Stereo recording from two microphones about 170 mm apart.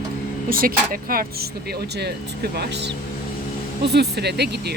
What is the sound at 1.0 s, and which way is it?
Speech, 60° right (ahead or behind).